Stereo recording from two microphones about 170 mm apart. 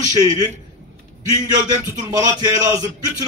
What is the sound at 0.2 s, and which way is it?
Speech, 20° right (ahead or behind).